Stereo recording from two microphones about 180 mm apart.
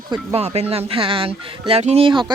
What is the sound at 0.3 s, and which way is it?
Speech, 35° right (ahead or behind).